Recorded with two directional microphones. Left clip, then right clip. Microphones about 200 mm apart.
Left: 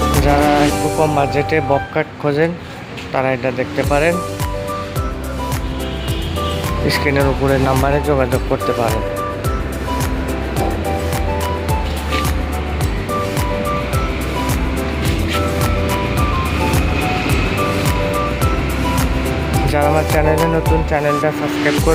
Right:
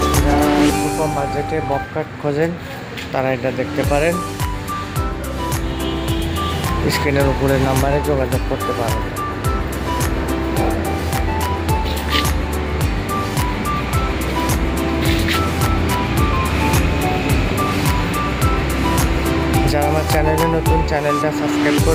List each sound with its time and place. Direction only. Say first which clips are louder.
0.1 s music: left 3 dB; centre (ahead or behind)
1.5 s speech: left 5 dB; 20° left (ahead or behind)
3.2 s speech: left 2 dB; centre (ahead or behind)
6.8 s speech: left 2 dB; centre (ahead or behind)
19.6 s speech: left 7 dB; centre (ahead or behind)